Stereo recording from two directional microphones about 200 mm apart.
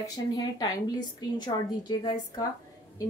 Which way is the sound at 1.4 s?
20° left (ahead or behind).